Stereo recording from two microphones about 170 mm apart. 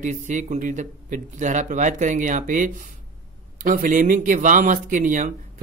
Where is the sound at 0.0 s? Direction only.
45° right (ahead or behind).